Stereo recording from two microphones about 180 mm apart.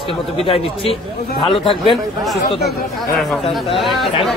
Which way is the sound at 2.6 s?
Centre (ahead or behind).